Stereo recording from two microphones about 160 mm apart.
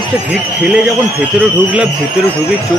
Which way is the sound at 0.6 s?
5° right (ahead or behind).